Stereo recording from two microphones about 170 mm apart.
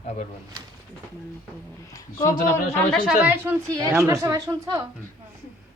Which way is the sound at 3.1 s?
10° right (ahead or behind).